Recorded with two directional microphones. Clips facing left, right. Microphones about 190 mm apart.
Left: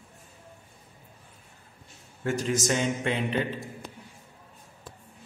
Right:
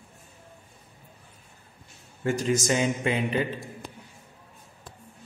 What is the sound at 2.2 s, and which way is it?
A man's voice, centre (ahead or behind).